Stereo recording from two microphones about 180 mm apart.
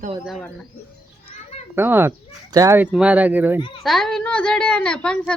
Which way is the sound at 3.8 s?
Centre (ahead or behind).